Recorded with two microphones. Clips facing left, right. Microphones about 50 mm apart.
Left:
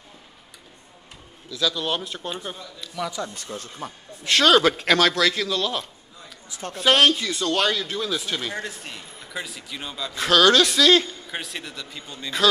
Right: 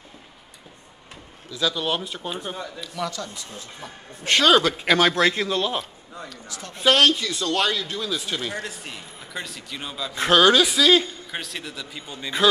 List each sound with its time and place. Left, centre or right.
1.5 s a man's voice: centre
3.3 s speech: left
4.4 s a man's voice: centre
5.1 s a man's voice: right
6.8 s speech: centre
10.1 s a man's voice: right
10.4 s a man's voice: centre